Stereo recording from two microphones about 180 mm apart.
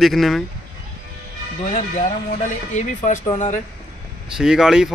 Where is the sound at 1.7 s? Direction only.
45° left (ahead or behind).